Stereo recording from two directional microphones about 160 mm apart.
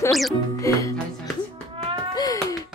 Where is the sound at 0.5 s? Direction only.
20° left (ahead or behind).